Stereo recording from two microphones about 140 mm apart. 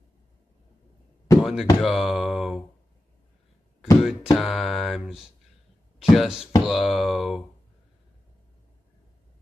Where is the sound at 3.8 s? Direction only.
5° right (ahead or behind).